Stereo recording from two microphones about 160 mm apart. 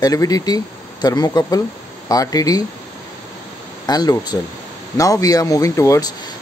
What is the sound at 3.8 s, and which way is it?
A man's voice, 25° left (ahead or behind).